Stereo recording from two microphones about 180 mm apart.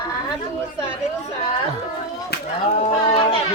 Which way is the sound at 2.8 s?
35° left (ahead or behind).